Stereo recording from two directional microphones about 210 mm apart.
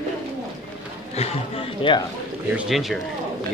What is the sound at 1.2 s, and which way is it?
Speech, 25° left (ahead or behind).